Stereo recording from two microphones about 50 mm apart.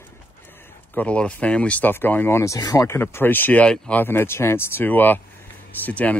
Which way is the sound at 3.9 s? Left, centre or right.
Left.